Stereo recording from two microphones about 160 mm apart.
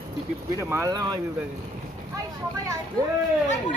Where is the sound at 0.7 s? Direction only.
20° right (ahead or behind).